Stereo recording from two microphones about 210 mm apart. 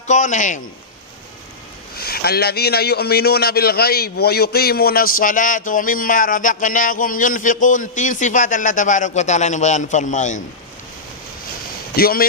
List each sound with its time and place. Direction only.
0.1 s a man's voice: 35° left (ahead or behind)
2.0 s a man's voice: 45° left (ahead or behind)
11.9 s speech: 45° left (ahead or behind)